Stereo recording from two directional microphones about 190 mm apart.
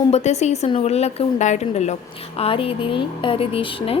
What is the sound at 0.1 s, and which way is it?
A woman's voice, 35° left (ahead or behind).